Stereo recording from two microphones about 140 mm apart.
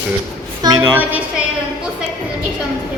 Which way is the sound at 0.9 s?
10° right (ahead or behind).